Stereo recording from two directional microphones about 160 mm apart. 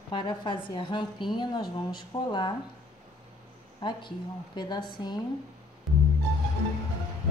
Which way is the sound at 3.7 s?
30° left (ahead or behind).